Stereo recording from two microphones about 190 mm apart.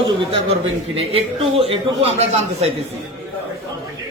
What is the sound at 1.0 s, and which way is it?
A man's voice, 30° right (ahead or behind).